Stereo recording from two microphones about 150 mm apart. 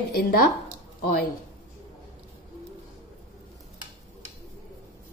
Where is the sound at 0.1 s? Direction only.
90° left.